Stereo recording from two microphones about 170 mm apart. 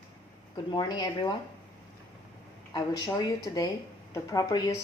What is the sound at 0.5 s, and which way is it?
Speech, 25° left (ahead or behind).